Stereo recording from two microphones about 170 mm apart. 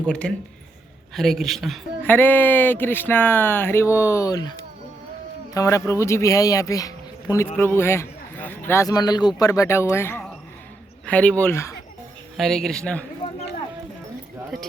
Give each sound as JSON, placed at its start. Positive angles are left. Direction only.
{"t": 0.1, "sound": "a woman's voice", "side_deg": 5}
{"t": 2.0, "sound": "speech", "side_deg": 10}
{"t": 5.5, "sound": "speech", "side_deg": 20}
{"t": 12.4, "sound": "a woman's voice", "side_deg": 0}